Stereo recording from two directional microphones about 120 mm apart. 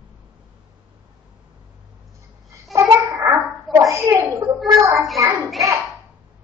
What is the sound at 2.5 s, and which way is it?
Babbling, 25° right (ahead or behind).